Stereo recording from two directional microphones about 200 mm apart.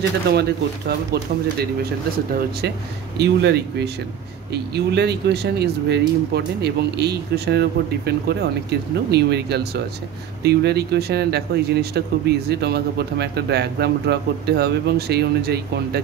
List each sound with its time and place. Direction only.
0.3 s speech: 55° right (ahead or behind)
3.2 s speech: 55° right (ahead or behind)